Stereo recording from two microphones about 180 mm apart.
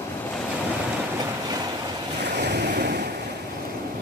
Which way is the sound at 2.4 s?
70° right (ahead or behind).